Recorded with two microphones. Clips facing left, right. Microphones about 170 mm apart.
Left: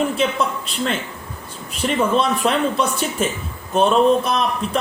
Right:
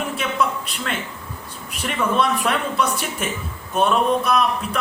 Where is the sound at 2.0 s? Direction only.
25° left (ahead or behind).